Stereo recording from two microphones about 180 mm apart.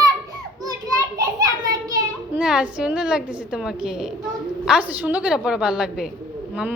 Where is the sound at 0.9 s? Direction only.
20° right (ahead or behind).